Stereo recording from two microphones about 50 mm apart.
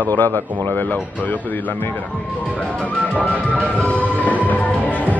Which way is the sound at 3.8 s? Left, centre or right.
Left.